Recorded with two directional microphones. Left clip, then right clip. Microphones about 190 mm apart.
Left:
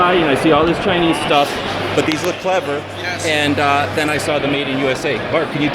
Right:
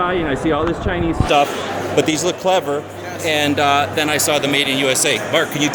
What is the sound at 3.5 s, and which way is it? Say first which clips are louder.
Speech: even; 5° right (ahead or behind).